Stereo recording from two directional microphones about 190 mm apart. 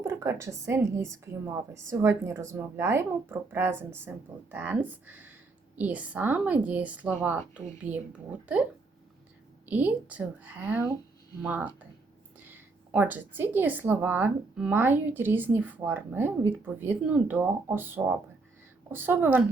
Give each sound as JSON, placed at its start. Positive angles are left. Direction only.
{"t": 0.0, "sound": "a woman's voice", "side_deg": -15}
{"t": 9.6, "sound": "a woman's voice", "side_deg": -10}